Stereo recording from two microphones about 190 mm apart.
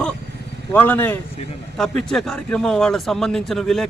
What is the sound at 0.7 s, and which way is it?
Speech, 10° left (ahead or behind).